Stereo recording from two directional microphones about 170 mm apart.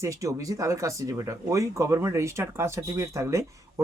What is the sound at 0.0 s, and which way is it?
Speech, 20° right (ahead or behind).